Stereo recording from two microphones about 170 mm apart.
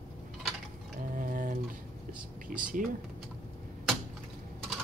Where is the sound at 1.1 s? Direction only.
50° right (ahead or behind).